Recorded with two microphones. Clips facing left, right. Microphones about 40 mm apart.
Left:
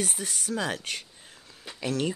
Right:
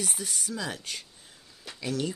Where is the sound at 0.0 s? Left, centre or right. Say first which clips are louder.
Left 2 dB; left.